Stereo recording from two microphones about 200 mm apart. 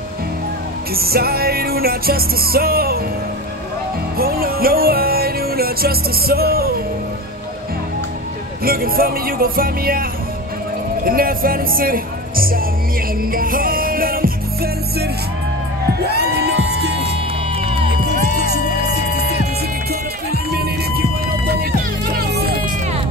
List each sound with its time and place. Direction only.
0.9 s music: 50° right (ahead or behind)
4.2 s music: 50° right (ahead or behind)
8.6 s speech: 45° right (ahead or behind)
11.1 s speech: 45° right (ahead or behind)
13.2 s music: 45° right (ahead or behind)
17.6 s music: 30° right (ahead or behind)
20.5 s music: 50° right (ahead or behind)